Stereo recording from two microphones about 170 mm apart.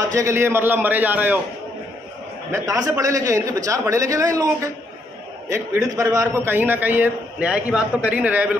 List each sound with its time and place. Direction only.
0.1 s a man's voice: 15° right (ahead or behind)
2.5 s a man's voice: 20° right (ahead or behind)
5.9 s a man's voice: 20° right (ahead or behind)